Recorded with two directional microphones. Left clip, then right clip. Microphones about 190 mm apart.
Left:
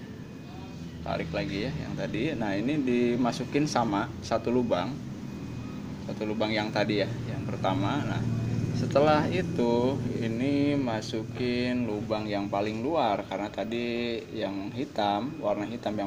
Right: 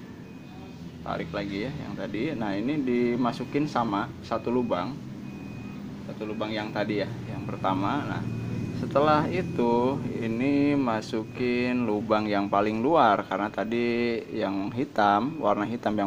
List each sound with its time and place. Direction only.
1.0 s speech: 5° right (ahead or behind)
6.2 s speech: 10° left (ahead or behind)
7.6 s speech: 10° right (ahead or behind)
11.9 s speech: 30° right (ahead or behind)